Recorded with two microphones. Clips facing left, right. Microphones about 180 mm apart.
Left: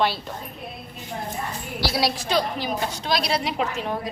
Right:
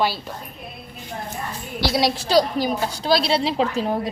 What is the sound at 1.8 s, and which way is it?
Speech, 20° right (ahead or behind).